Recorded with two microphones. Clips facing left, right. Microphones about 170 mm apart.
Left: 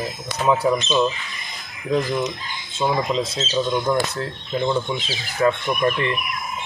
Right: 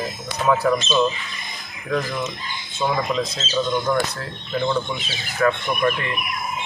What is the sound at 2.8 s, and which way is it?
Speech, 25° left (ahead or behind).